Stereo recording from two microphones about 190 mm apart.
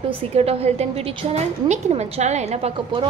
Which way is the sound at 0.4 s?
30° right (ahead or behind).